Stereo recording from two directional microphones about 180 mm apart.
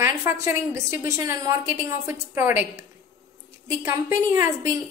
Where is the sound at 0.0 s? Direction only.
15° right (ahead or behind).